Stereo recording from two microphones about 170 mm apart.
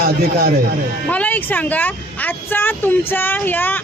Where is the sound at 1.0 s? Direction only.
10° left (ahead or behind).